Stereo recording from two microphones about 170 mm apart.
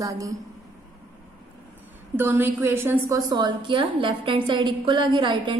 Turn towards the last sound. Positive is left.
turn(degrees=-30)  # may be behind; listen again after turning